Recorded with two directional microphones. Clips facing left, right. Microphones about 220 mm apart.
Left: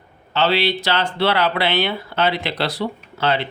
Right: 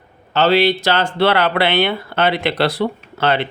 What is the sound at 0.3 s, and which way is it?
Speech, 45° right (ahead or behind).